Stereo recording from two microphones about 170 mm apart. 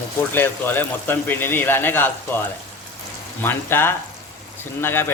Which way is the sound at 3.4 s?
15° left (ahead or behind).